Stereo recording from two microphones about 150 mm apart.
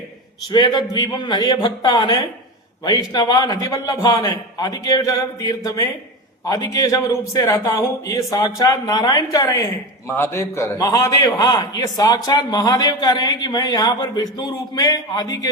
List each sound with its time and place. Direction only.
0.5 s a man's voice: 30° left (ahead or behind)